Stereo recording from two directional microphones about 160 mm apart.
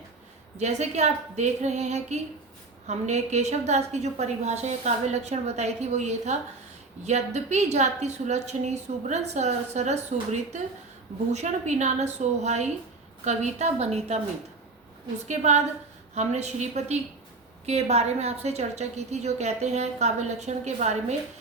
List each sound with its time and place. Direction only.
0.5 s a woman's voice: 45° right (ahead or behind)
15.3 s a woman's voice: 45° right (ahead or behind)